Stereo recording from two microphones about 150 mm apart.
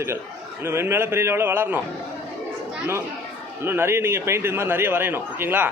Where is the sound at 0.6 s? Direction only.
15° right (ahead or behind).